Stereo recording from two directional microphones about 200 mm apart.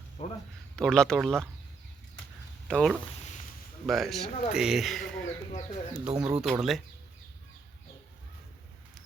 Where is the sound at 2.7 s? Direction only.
5° left (ahead or behind).